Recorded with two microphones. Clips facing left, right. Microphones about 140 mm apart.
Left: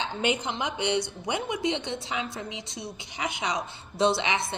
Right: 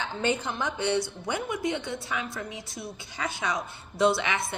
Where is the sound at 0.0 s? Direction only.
15° left (ahead or behind).